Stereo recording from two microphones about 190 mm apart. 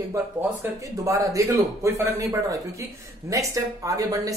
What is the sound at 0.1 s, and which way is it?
Speech, 15° right (ahead or behind).